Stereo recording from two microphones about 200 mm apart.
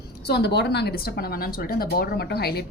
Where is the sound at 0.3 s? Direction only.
55° left (ahead or behind).